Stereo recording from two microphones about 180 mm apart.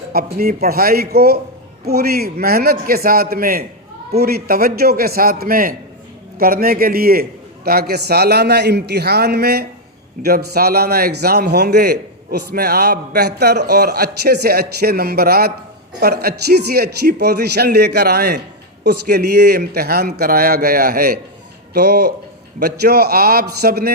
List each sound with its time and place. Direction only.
0.1 s a man's voice: 55° right (ahead or behind)